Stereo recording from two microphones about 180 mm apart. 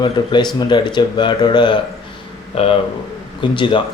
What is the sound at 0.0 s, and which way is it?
A man's voice, 25° left (ahead or behind).